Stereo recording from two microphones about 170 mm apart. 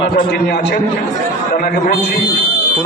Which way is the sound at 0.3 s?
80° left.